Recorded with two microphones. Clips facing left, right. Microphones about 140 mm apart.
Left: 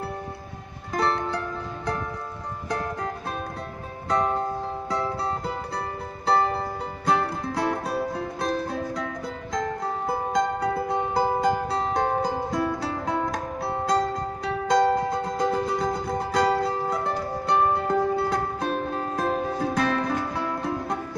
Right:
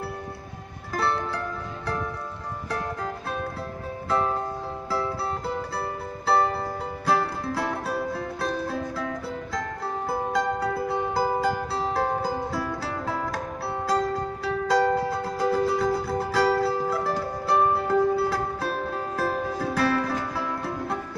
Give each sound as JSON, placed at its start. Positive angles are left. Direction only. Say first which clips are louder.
{"t": 0.9, "sound": "music", "louder": "left 2 dB", "side_deg": -5}
{"t": 7.1, "sound": "music", "louder": "even", "side_deg": -5}
{"t": 10.0, "sound": "music", "louder": "left 1 dB", "side_deg": -5}